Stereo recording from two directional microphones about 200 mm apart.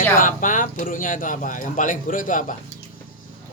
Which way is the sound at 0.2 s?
40° left (ahead or behind).